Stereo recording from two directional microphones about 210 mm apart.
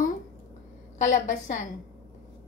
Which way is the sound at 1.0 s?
35° left (ahead or behind).